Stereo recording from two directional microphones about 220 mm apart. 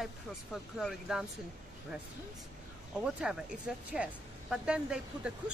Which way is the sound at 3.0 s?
5° right (ahead or behind).